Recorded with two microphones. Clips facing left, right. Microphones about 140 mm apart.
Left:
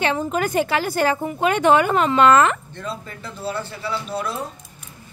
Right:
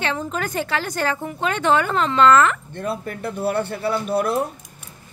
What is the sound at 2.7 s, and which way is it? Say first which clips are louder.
A man's voice: right 5 dB; 55° right (ahead or behind).